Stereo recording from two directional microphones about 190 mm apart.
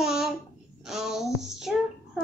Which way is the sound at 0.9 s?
Centre (ahead or behind).